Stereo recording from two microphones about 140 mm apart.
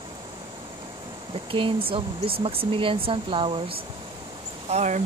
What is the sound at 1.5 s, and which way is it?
Speech, 40° right (ahead or behind).